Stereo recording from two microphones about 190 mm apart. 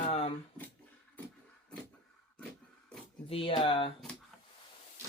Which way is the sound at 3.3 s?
30° left (ahead or behind).